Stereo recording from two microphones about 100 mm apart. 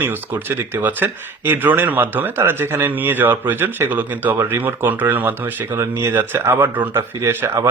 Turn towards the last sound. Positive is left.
turn(degrees=-25)  # may be behind; listen again after turning